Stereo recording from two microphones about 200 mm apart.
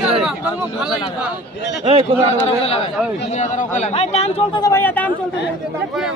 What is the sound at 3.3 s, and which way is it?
Speech, 35° left (ahead or behind).